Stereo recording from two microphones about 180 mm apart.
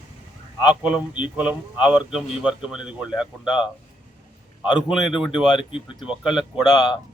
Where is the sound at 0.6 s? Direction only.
5° right (ahead or behind).